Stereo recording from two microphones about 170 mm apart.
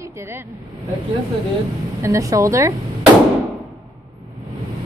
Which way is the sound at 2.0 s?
20° right (ahead or behind).